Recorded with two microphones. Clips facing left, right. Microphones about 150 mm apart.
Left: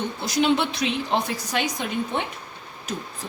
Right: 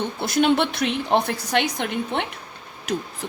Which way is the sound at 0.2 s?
55° right (ahead or behind).